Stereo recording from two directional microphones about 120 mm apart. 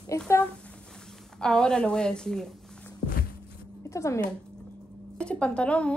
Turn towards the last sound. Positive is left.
turn(degrees=10)  # may be behind; listen again after turning